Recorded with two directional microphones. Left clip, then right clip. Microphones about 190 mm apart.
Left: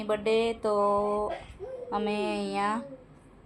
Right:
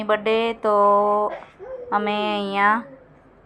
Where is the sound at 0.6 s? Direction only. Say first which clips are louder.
Right 9 dB; 30° right (ahead or behind).